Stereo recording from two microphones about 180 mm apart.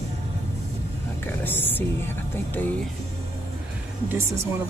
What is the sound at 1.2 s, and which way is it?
Speech, 10° left (ahead or behind).